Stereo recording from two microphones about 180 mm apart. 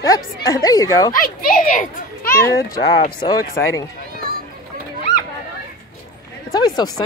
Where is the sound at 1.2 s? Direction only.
50° left (ahead or behind).